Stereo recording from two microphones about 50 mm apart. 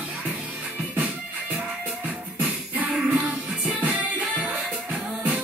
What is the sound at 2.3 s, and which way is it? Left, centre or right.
Music, right.